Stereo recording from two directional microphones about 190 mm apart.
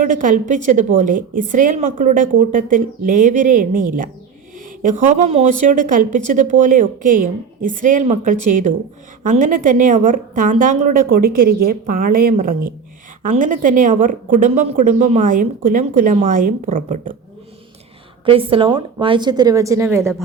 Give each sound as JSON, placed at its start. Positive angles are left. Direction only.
{"t": 0.0, "sound": "a woman's voice", "side_deg": -45}
{"t": 18.3, "sound": "a woman's voice", "side_deg": -30}